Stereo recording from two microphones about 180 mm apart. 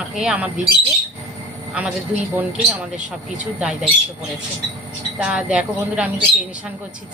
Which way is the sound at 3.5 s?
5° right (ahead or behind).